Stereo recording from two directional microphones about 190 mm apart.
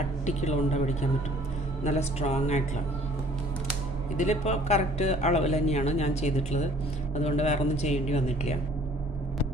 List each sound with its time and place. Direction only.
0.3 s speech: 35° left (ahead or behind)
4.2 s speech: 35° left (ahead or behind)